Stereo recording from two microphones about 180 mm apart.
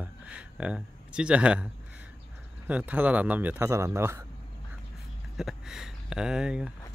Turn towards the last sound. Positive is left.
turn(degrees=-5)  # may be behind; listen again after turning